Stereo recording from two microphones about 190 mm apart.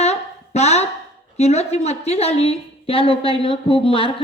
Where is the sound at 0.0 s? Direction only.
35° left (ahead or behind).